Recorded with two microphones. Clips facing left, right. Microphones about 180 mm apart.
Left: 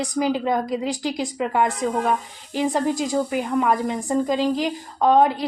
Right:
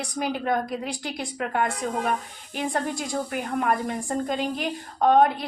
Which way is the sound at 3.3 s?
90° left.